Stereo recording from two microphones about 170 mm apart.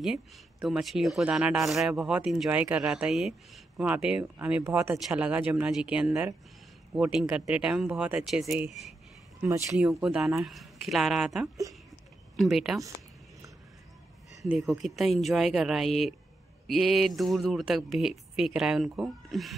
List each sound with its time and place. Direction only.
0.0 s speech: centre (ahead or behind)
9.4 s speech: 15° right (ahead or behind)
9.8 s speech: centre (ahead or behind)
14.7 s speech: centre (ahead or behind)